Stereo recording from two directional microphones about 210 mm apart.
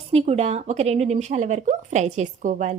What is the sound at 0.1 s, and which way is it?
Speech, 30° right (ahead or behind).